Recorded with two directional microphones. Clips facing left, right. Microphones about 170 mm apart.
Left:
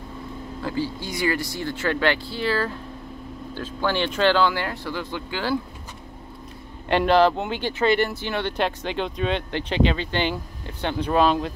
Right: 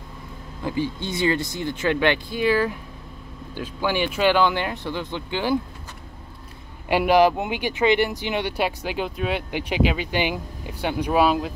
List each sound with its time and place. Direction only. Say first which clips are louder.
0.6 s speech: right 2 dB; 20° right (ahead or behind)
6.9 s speech: right 1 dB; 10° right (ahead or behind)